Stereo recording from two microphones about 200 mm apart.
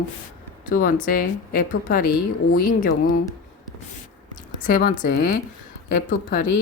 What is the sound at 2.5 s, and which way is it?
Speech, 40° left (ahead or behind).